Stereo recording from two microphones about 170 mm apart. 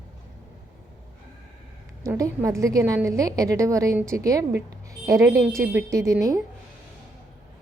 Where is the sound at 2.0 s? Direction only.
15° right (ahead or behind).